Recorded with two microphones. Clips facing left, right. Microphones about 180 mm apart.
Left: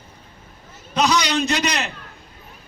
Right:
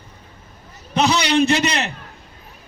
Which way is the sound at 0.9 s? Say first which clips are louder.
Right 2 dB; 25° right (ahead or behind).